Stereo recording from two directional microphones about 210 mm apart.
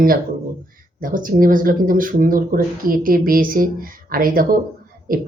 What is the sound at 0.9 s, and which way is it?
A woman's voice, 40° right (ahead or behind).